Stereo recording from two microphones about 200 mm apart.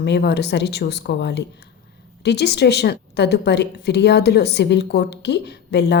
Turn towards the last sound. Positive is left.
turn(degrees=60)  # may be behind; listen again after turning